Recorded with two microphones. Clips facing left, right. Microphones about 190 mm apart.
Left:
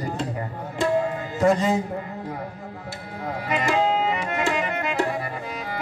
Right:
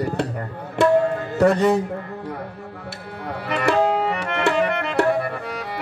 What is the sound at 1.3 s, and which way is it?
Speech, 65° right (ahead or behind).